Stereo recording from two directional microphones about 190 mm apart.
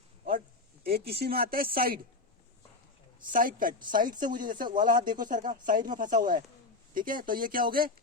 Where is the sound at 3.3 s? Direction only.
45° right (ahead or behind).